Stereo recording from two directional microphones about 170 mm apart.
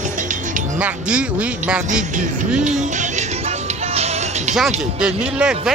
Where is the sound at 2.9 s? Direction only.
40° right (ahead or behind).